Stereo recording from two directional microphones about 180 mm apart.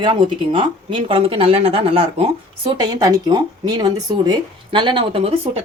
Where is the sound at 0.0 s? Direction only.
25° right (ahead or behind).